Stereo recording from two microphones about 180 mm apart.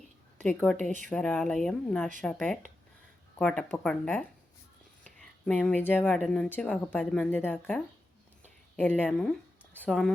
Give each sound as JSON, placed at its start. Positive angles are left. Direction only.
{"t": 0.4, "sound": "a woman's voice", "side_deg": 5}
{"t": 5.0, "sound": "a sound", "side_deg": 5}
{"t": 6.1, "sound": "a woman's voice", "side_deg": 5}